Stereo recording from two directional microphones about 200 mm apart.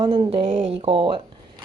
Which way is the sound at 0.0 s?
25° right (ahead or behind).